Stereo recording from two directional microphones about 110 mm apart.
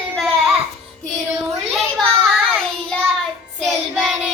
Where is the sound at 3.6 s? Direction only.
5° right (ahead or behind).